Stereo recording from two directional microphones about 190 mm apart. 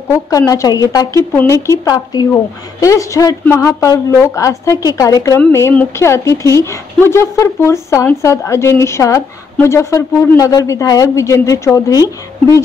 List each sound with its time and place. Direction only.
0.3 s a woman's voice: 20° left (ahead or behind)